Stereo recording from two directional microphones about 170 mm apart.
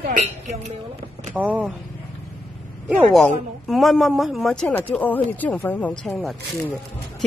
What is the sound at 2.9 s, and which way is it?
A woman's voice, centre (ahead or behind).